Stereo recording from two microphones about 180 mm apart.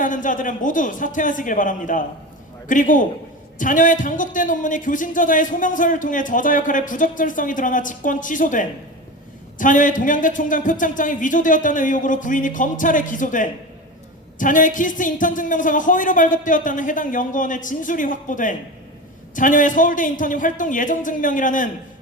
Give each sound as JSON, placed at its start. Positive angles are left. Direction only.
{"t": 0.0, "sound": "a man's voice", "side_deg": 45}